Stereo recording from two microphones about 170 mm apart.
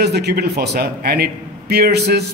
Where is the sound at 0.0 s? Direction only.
75° right (ahead or behind).